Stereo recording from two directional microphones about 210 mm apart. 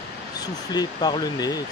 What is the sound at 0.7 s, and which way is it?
Speech, 20° left (ahead or behind).